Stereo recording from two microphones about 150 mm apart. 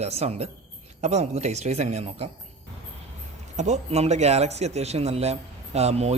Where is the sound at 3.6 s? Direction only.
50° right (ahead or behind).